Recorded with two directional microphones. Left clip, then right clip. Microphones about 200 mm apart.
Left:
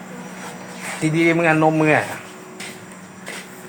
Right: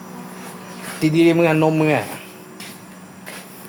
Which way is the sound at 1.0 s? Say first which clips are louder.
Right 2 dB; 45° right (ahead or behind).